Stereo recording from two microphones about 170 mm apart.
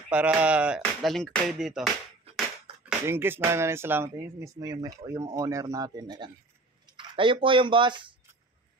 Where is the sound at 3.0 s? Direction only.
15° right (ahead or behind).